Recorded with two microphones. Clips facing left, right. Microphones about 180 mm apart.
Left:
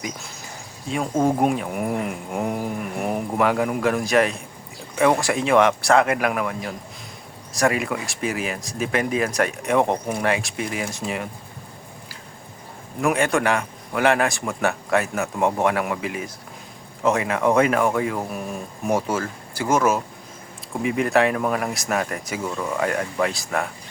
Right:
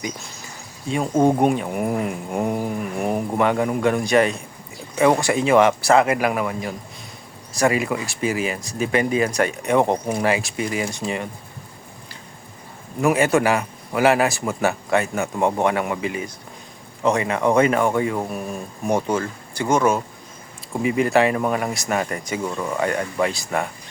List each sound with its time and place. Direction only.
0.9 s speech: centre (ahead or behind)
13.0 s speech: 5° right (ahead or behind)